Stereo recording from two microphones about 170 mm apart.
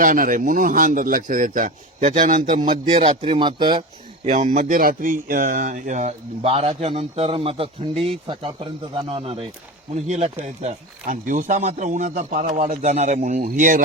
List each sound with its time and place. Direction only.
0.0 s speech: 55° right (ahead or behind)
2.6 s speech: 30° right (ahead or behind)
4.3 s speech: 50° right (ahead or behind)